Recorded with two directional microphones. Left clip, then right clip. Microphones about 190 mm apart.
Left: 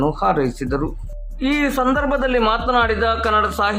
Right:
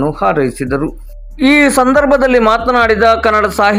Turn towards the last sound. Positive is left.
turn(degrees=-25)  # may be behind; listen again after turning